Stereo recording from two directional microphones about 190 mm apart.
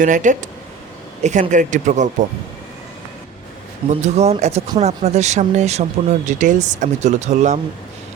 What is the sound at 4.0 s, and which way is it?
Speech, 35° right (ahead or behind).